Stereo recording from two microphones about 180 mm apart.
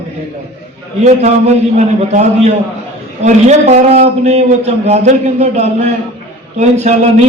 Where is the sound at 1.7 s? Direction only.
40° right (ahead or behind).